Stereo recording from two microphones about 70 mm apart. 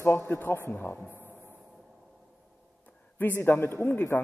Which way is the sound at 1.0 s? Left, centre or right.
Right.